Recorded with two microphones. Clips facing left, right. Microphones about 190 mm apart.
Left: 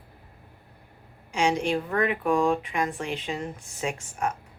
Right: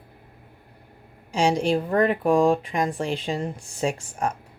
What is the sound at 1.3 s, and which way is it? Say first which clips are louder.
A woman's voice: right 3 dB; 35° right (ahead or behind).